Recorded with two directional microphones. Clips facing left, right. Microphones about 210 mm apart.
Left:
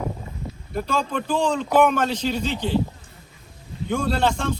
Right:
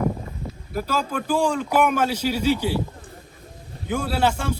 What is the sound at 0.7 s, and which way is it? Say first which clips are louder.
Speech: left 1 dB; 5° right (ahead or behind).